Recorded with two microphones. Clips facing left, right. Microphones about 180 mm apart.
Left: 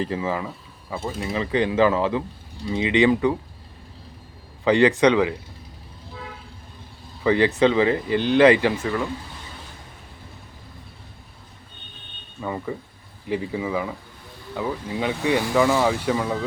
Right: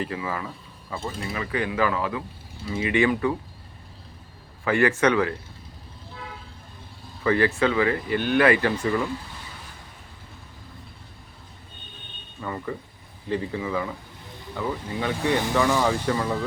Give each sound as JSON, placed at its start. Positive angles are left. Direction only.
{"t": 0.0, "sound": "speech", "side_deg": 25}
{"t": 1.2, "sound": "speech", "side_deg": 25}
{"t": 4.6, "sound": "speech", "side_deg": 20}
{"t": 7.3, "sound": "speech", "side_deg": 20}
{"t": 12.4, "sound": "speech", "side_deg": 10}